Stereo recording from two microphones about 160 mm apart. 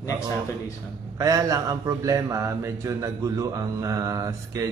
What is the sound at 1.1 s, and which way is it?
A man's voice, 20° right (ahead or behind).